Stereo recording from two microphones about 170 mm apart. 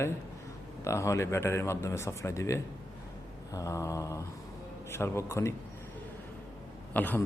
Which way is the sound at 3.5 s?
20° left (ahead or behind).